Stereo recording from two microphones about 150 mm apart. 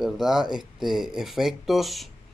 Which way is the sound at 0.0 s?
5° right (ahead or behind).